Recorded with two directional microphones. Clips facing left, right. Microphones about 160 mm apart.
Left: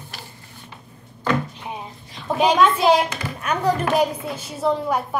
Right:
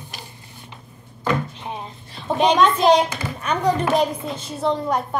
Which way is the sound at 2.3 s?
Centre (ahead or behind).